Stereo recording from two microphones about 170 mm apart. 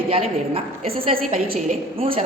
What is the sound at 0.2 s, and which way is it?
A woman's voice, 35° right (ahead or behind).